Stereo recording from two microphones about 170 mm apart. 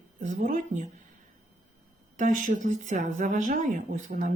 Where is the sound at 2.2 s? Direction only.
50° right (ahead or behind).